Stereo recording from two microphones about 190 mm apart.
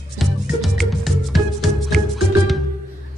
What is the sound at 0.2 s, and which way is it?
Music, centre (ahead or behind).